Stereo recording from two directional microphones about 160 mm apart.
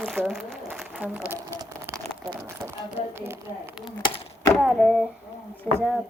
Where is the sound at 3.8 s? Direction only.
30° left (ahead or behind).